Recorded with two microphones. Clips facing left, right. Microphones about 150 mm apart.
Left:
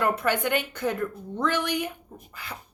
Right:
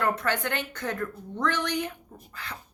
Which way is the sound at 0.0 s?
10° left (ahead or behind).